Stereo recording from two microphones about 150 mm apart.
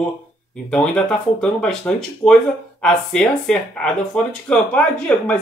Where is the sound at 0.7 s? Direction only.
5° left (ahead or behind).